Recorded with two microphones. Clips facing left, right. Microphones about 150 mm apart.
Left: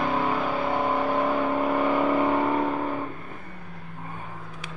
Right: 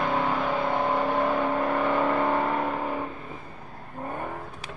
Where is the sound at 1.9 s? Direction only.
5° left (ahead or behind).